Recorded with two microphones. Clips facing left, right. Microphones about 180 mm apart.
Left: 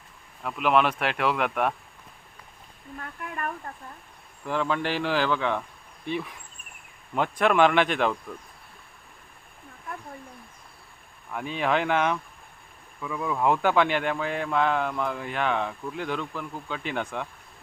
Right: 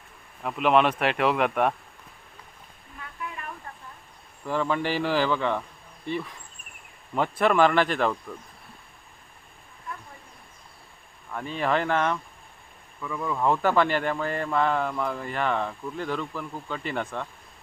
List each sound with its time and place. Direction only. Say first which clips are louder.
0.4 s speech: right 2 dB; centre (ahead or behind)
3.0 s speech: left 3 dB; 55° left (ahead or behind)
4.4 s speech: right 1 dB; 5° right (ahead or behind)
7.2 s speech: even; 5° right (ahead or behind)
11.3 s speech: even; 5° left (ahead or behind)
13.0 s insect: left 1 dB; 10° left (ahead or behind)
13.7 s speech: even; centre (ahead or behind)